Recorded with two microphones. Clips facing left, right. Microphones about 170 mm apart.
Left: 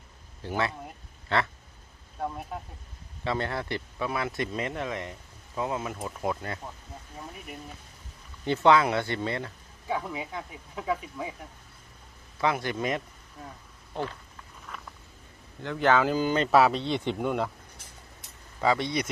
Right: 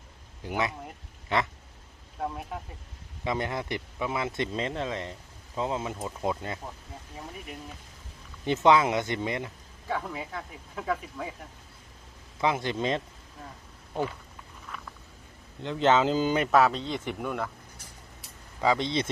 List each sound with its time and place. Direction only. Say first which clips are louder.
0.4 s speech: even; 15° right (ahead or behind)
2.3 s speech: even; centre (ahead or behind)
3.2 s speech: even; 15° right (ahead or behind)
8.4 s speech: even; 20° right (ahead or behind)
9.9 s speech: left 1 dB; 10° left (ahead or behind)
12.4 s speech: even; 20° right (ahead or behind)
13.9 s speech: right 3 dB; 10° right (ahead or behind)
14.7 s a sound: even; 5° left (ahead or behind)
15.6 s speech: right 1 dB; 20° right (ahead or behind)
16.5 s speech: left 4 dB; 10° left (ahead or behind)
18.6 s speech: even; 20° right (ahead or behind)